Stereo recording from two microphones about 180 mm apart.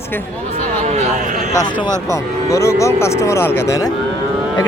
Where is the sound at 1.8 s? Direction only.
15° left (ahead or behind).